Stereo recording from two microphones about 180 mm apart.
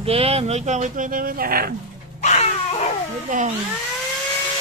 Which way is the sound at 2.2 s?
40° left (ahead or behind).